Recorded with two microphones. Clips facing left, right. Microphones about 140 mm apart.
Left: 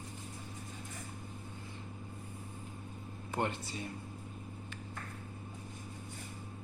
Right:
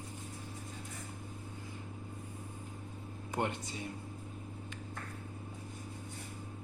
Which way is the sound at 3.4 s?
15° right (ahead or behind).